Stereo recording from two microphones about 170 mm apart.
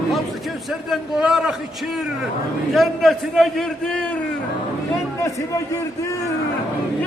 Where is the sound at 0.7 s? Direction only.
5° right (ahead or behind).